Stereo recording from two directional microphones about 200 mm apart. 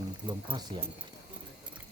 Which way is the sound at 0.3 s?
25° right (ahead or behind).